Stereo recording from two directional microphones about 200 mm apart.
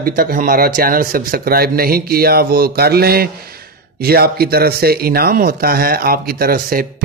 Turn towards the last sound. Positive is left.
turn(degrees=-45)  # may be behind; listen again after turning